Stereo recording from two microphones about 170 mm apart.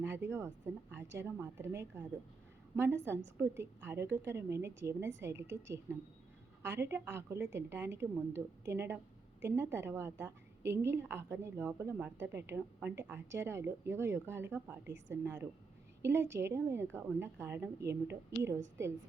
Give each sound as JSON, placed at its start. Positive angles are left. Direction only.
{"t": 0.0, "sound": "a woman's voice", "side_deg": -15}